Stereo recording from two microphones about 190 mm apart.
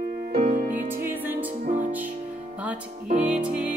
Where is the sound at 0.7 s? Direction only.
10° right (ahead or behind).